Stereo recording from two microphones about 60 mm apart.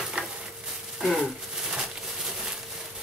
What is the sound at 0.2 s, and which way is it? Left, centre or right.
Stir, right.